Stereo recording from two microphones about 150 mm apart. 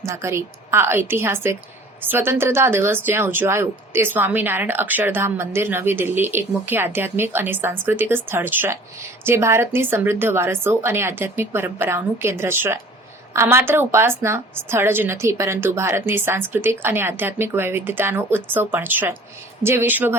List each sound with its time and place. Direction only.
0.0 s speech: 20° right (ahead or behind)